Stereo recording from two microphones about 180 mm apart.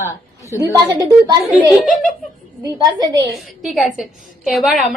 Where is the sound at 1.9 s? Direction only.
50° left (ahead or behind).